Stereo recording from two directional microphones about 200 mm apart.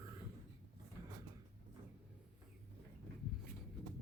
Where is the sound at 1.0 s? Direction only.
15° right (ahead or behind).